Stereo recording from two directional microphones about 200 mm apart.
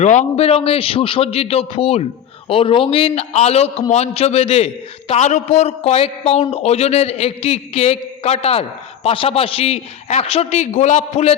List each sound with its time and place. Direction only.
0.0 s a man's voice: 35° left (ahead or behind)